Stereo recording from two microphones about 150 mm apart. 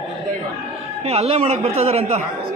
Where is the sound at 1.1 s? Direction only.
45° right (ahead or behind).